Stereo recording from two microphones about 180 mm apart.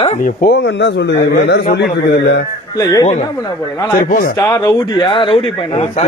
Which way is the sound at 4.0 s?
50° left (ahead or behind).